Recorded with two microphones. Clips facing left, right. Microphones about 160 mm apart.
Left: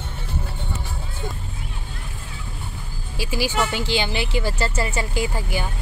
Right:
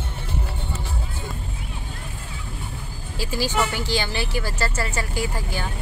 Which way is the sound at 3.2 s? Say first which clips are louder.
Left 1 dB; 15° left (ahead or behind).